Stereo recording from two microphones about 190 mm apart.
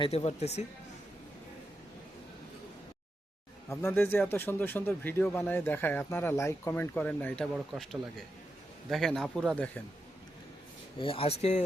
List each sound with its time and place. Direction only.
0.0 s speech: 30° left (ahead or behind)
3.7 s a man's voice: 15° left (ahead or behind)
8.9 s speech: centre (ahead or behind)
11.0 s speech: 30° left (ahead or behind)